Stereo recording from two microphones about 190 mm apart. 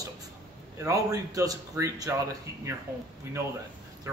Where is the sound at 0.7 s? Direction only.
15° right (ahead or behind).